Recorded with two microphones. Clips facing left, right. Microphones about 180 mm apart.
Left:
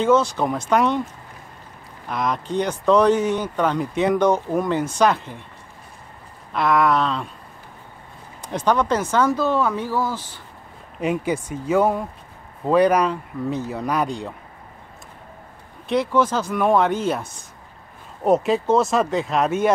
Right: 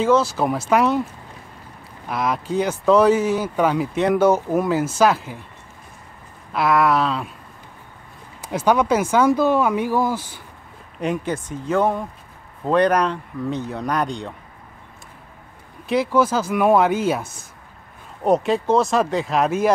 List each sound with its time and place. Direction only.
0.0 s speech: 5° right (ahead or behind)
2.0 s speech: 5° right (ahead or behind)
6.5 s speech: 5° right (ahead or behind)
8.4 s speech: 5° right (ahead or behind)
11.0 s speech: 5° left (ahead or behind)
15.9 s speech: 5° right (ahead or behind)